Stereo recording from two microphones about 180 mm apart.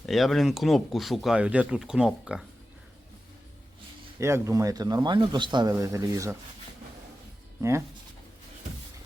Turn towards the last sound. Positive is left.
turn(degrees=-15)  # may be behind; listen again after turning